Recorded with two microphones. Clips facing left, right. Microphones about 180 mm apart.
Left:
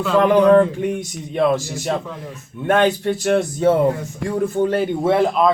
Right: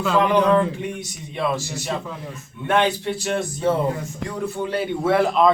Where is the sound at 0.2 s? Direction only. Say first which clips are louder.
Left 6 dB; 50° left (ahead or behind).